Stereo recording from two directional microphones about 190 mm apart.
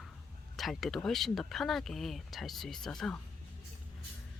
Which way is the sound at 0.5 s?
Centre (ahead or behind).